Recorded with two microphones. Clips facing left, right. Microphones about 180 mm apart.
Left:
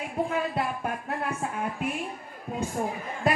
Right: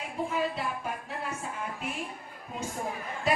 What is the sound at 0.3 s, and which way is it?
Music, 55° left (ahead or behind).